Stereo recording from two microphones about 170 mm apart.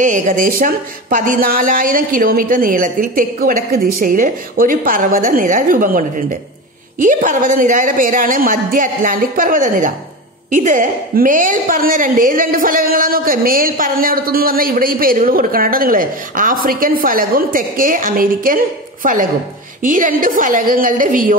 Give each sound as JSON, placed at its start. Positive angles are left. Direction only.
{"t": 0.0, "sound": "a woman's voice", "side_deg": -50}
{"t": 19.8, "sound": "a woman's voice", "side_deg": -50}